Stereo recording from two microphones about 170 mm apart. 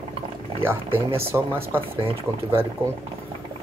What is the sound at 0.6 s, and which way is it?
Speech, 15° right (ahead or behind).